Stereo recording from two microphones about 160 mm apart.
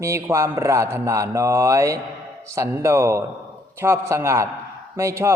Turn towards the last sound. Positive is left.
turn(degrees=-15)  # may be behind; listen again after turning